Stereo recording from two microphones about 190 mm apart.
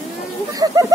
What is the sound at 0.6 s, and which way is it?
Speech, 20° right (ahead or behind).